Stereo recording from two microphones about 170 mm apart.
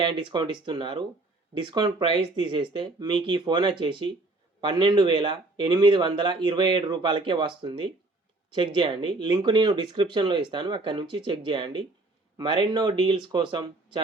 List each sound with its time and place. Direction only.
0.0 s speech: 30° right (ahead or behind)